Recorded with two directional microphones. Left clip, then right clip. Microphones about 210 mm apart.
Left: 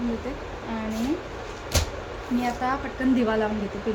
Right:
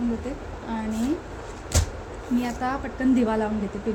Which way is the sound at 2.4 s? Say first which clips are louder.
Left 5 dB; centre (ahead or behind).